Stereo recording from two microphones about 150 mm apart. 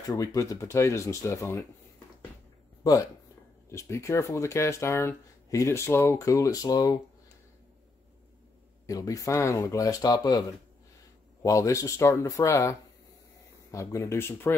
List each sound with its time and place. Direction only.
0.1 s speech: 20° left (ahead or behind)
2.8 s speech: 25° left (ahead or behind)
8.8 s speech: 20° left (ahead or behind)
11.4 s speech: 20° left (ahead or behind)